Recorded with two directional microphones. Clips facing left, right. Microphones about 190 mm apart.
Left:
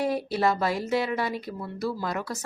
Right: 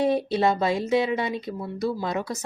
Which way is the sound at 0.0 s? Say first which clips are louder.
Right 3 dB; 25° right (ahead or behind).